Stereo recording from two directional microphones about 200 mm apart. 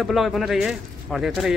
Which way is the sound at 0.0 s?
Centre (ahead or behind).